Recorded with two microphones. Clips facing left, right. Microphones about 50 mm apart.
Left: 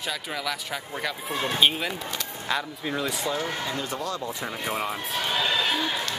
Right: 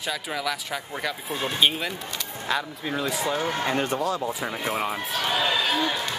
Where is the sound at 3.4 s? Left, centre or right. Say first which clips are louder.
Right 5 dB; right.